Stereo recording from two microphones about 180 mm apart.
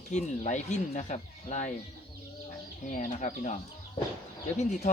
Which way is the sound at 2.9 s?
45° left (ahead or behind).